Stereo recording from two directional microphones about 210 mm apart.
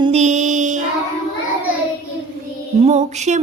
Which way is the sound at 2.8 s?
30° right (ahead or behind).